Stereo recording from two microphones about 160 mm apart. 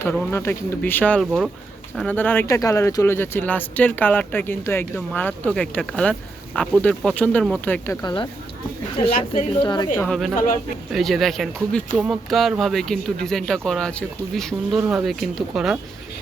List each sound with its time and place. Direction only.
0.0 s speech: 15° left (ahead or behind)
8.0 s a woman's voice: 30° left (ahead or behind)
9.3 s a woman's voice: 25° left (ahead or behind)
10.1 s speech: centre (ahead or behind)
10.3 s speech: 60° left (ahead or behind)
10.9 s speech: centre (ahead or behind)